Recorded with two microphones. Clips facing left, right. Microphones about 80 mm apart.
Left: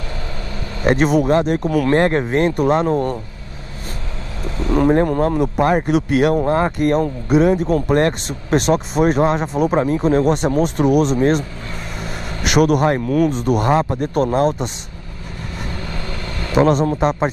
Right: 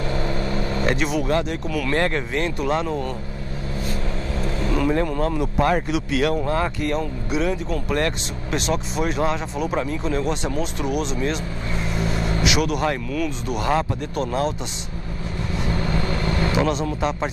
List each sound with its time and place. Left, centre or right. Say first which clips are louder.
0.1 s vehicle: right 5 dB; right
0.8 s speech: left 9 dB; left
4.6 s speech: left 7 dB; left
5.6 s speech: left 3 dB; left
5.9 s speech: left 6 dB; left
6.3 s speech: left 6 dB; left
13.7 s speech: left 3 dB; left
13.9 s speech: left 7 dB; left
15.8 s vehicle: right 4 dB; right
16.5 s speech: left 12 dB; left